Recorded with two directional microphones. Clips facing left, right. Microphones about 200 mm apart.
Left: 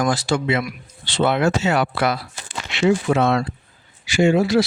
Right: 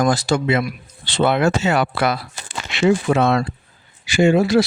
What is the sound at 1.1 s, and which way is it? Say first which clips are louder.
Speech: right 1 dB; 60° right (ahead or behind).